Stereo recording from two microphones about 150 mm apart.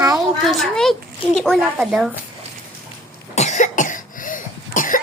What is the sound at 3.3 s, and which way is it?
Cough, 50° left (ahead or behind).